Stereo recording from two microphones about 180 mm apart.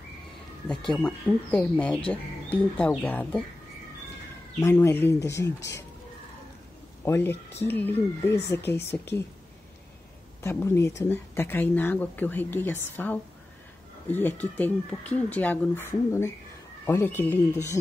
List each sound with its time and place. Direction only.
0.7 s speech: 5° left (ahead or behind)
4.6 s speech: 15° left (ahead or behind)
7.1 s speech: 15° left (ahead or behind)
10.4 s speech: 15° left (ahead or behind)